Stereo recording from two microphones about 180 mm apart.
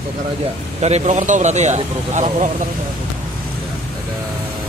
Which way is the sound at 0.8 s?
35° right (ahead or behind).